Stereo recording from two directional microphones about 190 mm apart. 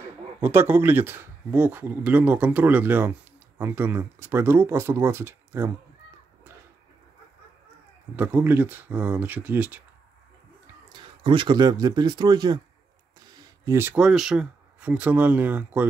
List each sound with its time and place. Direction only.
0.0 s speech: 10° right (ahead or behind)
8.2 s speech: 10° right (ahead or behind)
10.9 s speech: 25° right (ahead or behind); by 15.9 s 10° right (ahead or behind)